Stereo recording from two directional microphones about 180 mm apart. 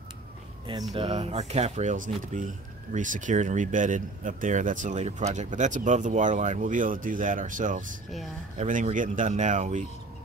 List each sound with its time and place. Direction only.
0.9 s speech: 30° right (ahead or behind)